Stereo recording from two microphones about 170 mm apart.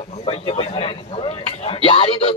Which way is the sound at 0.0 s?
35° left (ahead or behind).